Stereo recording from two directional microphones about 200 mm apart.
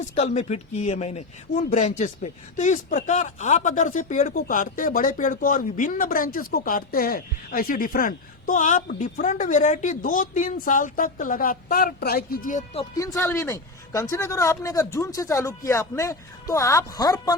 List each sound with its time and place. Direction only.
0.2 s speech: 35° left (ahead or behind)
13.0 s speech: 15° left (ahead or behind)